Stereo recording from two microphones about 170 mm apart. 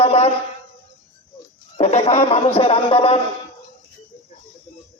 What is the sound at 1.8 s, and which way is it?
A man's voice, 40° left (ahead or behind).